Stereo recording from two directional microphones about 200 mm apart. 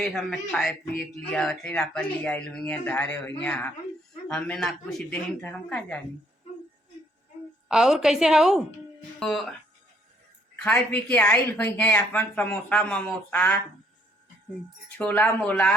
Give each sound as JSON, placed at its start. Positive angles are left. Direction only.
{"t": 0.0, "sound": "speech", "side_deg": 0}
{"t": 7.7, "sound": "speech", "side_deg": 0}
{"t": 11.1, "sound": "speech", "side_deg": 5}
{"t": 14.9, "sound": "speech", "side_deg": 10}